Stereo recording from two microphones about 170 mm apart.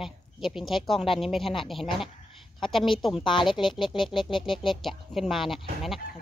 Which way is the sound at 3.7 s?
30° left (ahead or behind).